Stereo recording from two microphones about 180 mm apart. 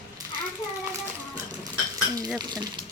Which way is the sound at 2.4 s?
20° right (ahead or behind).